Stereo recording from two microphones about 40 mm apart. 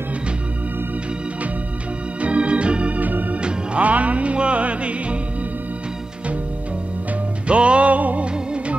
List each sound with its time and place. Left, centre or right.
2.1 s organ: right
3.0 s organ: right
3.3 s music: right
7.4 s music: right